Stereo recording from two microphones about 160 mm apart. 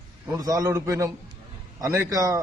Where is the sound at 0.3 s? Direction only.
25° right (ahead or behind).